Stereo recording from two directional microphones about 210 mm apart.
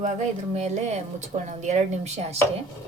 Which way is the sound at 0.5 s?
30° right (ahead or behind).